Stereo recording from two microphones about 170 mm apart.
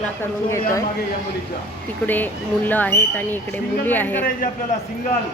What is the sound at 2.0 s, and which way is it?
Speech, 10° left (ahead or behind).